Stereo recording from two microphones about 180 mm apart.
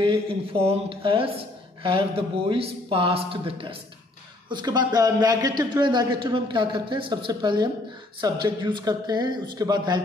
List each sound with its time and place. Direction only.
0.0 s a man's voice: 30° right (ahead or behind)